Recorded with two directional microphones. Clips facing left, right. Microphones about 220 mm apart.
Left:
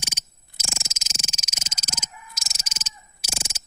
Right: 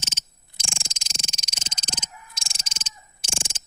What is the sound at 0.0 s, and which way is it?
Frog, 10° left (ahead or behind).